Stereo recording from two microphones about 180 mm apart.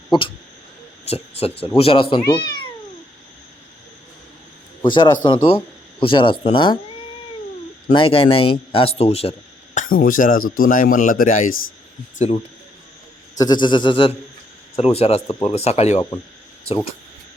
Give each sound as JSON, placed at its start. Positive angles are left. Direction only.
{"t": 1.1, "sound": "speech", "side_deg": 35}
{"t": 4.8, "sound": "a man's voice", "side_deg": 25}
{"t": 7.9, "sound": "speech", "side_deg": 30}
{"t": 9.7, "sound": "speech", "side_deg": 50}
{"t": 13.3, "sound": "speech", "side_deg": 20}